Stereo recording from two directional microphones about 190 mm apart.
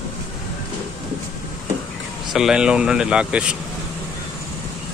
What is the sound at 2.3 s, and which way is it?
Speech, centre (ahead or behind).